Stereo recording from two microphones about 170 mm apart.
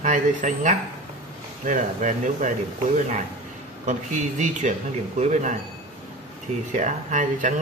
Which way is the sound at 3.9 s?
45° right (ahead or behind).